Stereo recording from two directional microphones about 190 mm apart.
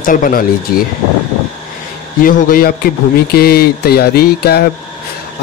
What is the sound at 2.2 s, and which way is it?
Speech, 50° left (ahead or behind).